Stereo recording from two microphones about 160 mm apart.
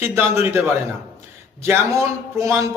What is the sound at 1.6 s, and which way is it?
A man's voice, 15° right (ahead or behind).